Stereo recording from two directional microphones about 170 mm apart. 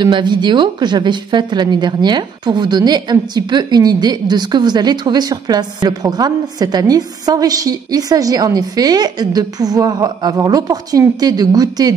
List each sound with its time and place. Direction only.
0.0 s a woman's voice: 25° right (ahead or behind)